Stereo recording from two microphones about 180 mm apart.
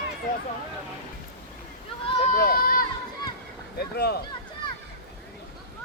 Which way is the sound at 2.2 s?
50° left (ahead or behind).